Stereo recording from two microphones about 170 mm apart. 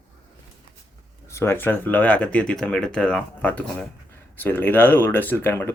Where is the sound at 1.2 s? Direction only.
15° left (ahead or behind).